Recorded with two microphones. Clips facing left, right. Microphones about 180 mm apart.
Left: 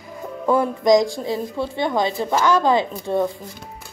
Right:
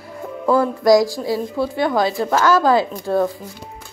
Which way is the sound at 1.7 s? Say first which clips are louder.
Right 2 dB; 20° left (ahead or behind).